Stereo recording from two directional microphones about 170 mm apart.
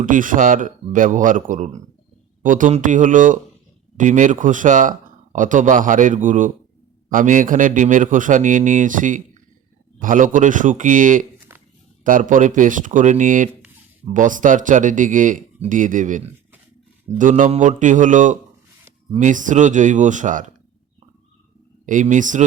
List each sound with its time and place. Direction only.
0.0 s speech: 50° right (ahead or behind)
21.8 s speech: 50° right (ahead or behind)